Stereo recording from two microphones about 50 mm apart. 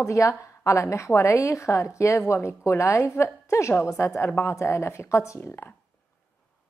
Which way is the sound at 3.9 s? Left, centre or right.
Left.